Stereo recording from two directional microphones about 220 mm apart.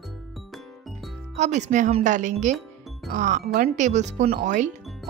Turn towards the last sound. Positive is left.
turn(degrees=-35)  # may be behind; listen again after turning